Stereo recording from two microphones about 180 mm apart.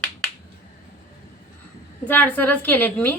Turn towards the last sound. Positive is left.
turn(degrees=10)  # may be behind; listen again after turning